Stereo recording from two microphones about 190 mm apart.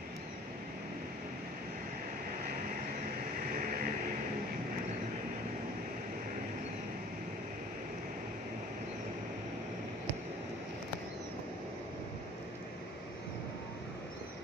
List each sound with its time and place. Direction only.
3.5 s vehicle: 50° right (ahead or behind)